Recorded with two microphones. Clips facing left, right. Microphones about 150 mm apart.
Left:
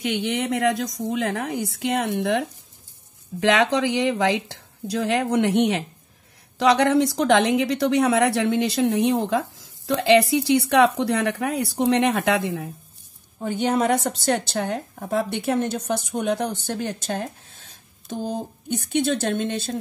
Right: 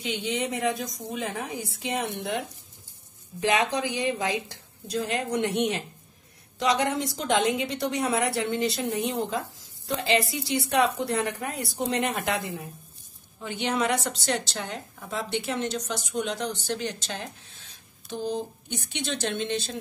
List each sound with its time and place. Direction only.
0.1 s a woman's voice: 70° left (ahead or behind)
10.7 s speech: 85° left
13.4 s a woman's voice: 45° left (ahead or behind)